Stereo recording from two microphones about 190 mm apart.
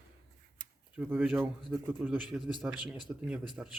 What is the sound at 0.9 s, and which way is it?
A man's voice, 5° right (ahead or behind).